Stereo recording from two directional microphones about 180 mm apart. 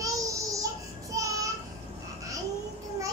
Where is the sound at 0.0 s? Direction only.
20° right (ahead or behind).